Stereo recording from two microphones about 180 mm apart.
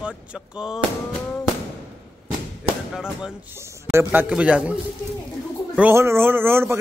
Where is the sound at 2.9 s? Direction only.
5° right (ahead or behind).